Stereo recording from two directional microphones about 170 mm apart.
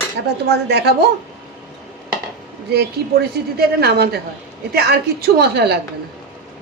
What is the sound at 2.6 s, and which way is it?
A woman's voice, 70° right (ahead or behind).